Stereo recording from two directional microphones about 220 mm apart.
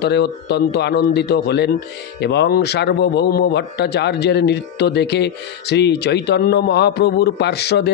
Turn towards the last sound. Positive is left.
turn(degrees=50)  # may be behind; listen again after turning